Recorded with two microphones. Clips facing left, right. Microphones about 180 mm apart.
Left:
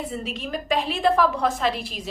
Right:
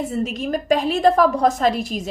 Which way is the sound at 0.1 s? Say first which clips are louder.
Right 7 dB; 45° right (ahead or behind).